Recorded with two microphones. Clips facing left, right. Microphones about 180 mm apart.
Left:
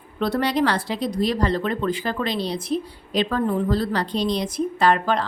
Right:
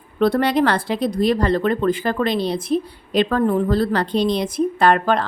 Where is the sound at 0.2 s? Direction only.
55° right (ahead or behind).